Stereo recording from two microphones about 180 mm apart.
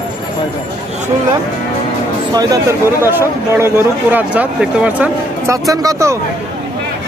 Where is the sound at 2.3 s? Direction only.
20° right (ahead or behind).